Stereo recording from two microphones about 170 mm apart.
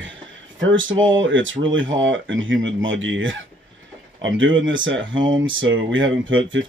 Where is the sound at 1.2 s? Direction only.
90° right.